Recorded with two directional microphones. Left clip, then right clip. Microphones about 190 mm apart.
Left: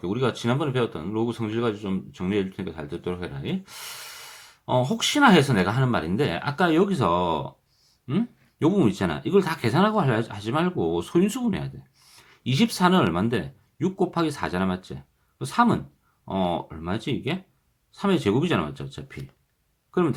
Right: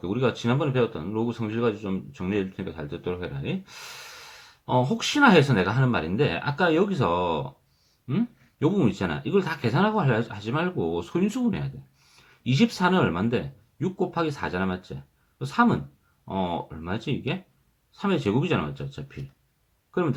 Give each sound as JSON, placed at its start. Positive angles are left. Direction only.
{"t": 0.0, "sound": "speech", "side_deg": 20}